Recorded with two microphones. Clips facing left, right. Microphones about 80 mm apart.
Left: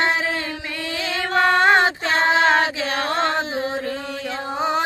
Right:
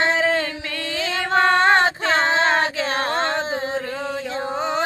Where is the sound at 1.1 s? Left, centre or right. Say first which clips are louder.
Right 1 dB; right.